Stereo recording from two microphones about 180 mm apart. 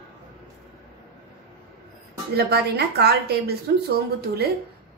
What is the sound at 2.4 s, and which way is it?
A woman's voice, 60° right (ahead or behind).